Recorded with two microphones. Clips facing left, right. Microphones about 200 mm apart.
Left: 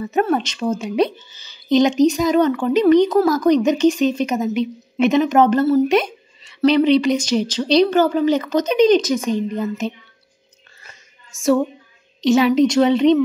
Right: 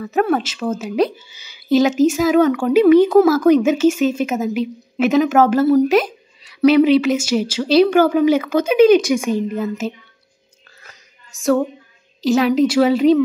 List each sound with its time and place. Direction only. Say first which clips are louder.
0.0 s speech: right 1 dB; centre (ahead or behind)
10.8 s a sound: right 1 dB; centre (ahead or behind)
12.2 s speech: left 1 dB; centre (ahead or behind)